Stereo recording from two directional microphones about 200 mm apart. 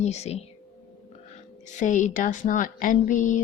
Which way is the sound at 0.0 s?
35° left (ahead or behind).